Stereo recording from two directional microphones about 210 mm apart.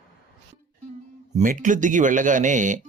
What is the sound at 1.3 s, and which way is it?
Speech, 40° right (ahead or behind).